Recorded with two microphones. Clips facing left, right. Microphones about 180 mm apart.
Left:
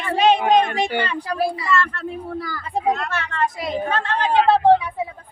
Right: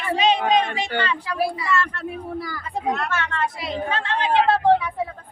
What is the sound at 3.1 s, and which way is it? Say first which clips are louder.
Speech: left 1 dB; 35° left (ahead or behind).